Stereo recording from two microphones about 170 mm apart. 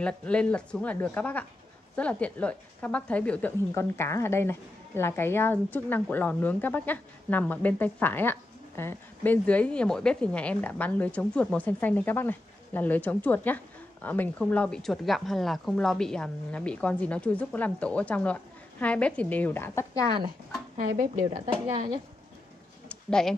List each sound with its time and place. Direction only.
0.0 s a woman's voice: 5° left (ahead or behind)
20.9 s a woman's voice: 55° right (ahead or behind)
21.3 s speech: 40° right (ahead or behind)
22.8 s a sound: 5° left (ahead or behind)